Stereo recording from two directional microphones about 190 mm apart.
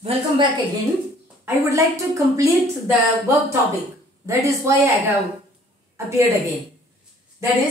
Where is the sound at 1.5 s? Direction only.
15° right (ahead or behind).